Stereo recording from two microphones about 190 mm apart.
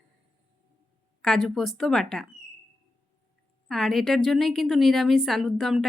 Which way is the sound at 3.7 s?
Centre (ahead or behind).